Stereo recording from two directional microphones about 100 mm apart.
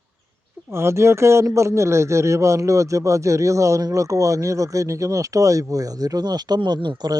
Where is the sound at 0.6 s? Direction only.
25° right (ahead or behind).